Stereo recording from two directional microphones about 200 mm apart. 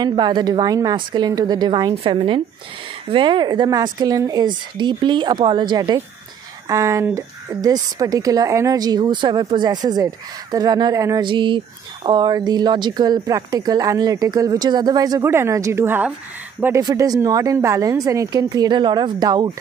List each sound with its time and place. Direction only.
0.0 s a woman's voice: 20° right (ahead or behind)